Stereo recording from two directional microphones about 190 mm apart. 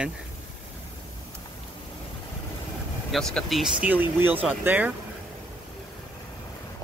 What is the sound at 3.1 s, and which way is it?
Speech, centre (ahead or behind).